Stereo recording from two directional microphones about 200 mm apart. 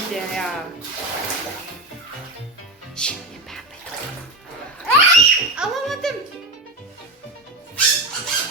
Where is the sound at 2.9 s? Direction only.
5° left (ahead or behind).